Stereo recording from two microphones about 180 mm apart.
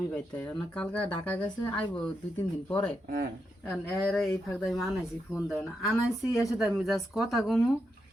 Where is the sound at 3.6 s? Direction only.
10° left (ahead or behind).